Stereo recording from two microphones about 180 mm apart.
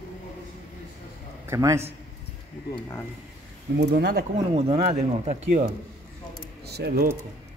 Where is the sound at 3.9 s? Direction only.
60° right (ahead or behind).